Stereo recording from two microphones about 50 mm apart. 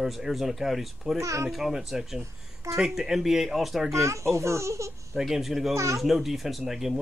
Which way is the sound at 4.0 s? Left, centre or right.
Right.